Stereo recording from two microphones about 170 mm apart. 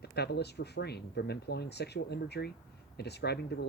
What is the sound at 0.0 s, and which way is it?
Speech, 75° left (ahead or behind).